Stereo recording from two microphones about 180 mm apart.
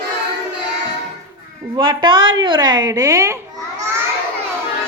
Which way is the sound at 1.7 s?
25° right (ahead or behind).